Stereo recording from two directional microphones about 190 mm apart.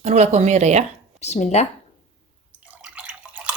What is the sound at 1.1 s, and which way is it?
Speech, 35° left (ahead or behind).